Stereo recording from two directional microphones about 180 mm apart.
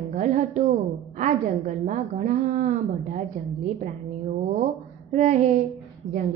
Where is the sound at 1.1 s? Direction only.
45° right (ahead or behind).